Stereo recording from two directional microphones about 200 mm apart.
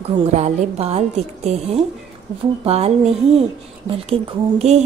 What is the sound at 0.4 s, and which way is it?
A woman's voice, 30° right (ahead or behind).